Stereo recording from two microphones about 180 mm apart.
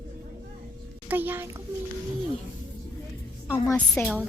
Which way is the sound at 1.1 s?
10° right (ahead or behind).